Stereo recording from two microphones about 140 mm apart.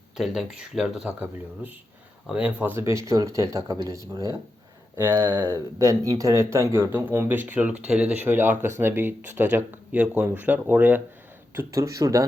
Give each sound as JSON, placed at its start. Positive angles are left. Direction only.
{"t": 0.2, "sound": "speech", "side_deg": 0}
{"t": 2.2, "sound": "speech", "side_deg": -10}
{"t": 11.5, "sound": "speech", "side_deg": -20}